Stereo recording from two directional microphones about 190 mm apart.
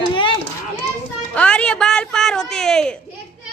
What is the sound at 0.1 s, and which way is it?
Children playing, 25° left (ahead or behind).